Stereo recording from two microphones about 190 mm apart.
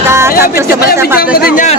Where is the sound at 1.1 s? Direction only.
50° left (ahead or behind).